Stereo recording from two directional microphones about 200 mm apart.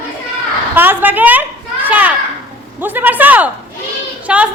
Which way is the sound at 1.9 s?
10° right (ahead or behind).